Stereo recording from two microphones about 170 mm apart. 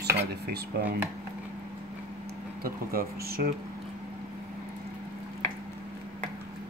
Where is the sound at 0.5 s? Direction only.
70° right (ahead or behind).